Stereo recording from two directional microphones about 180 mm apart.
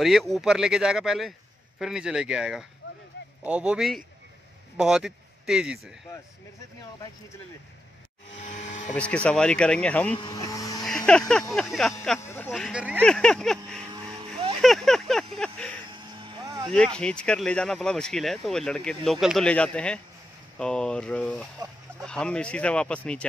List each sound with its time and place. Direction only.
0.0 s speech: centre (ahead or behind)
8.4 s vehicle: 40° left (ahead or behind)
8.9 s speech: 5° left (ahead or behind)
10.3 s speech: 20° left (ahead or behind)
10.9 s speech: 5° left (ahead or behind)
14.6 s speech: centre (ahead or behind)
15.9 s vehicle: 25° right (ahead or behind)
16.7 s speech: 5° left (ahead or behind)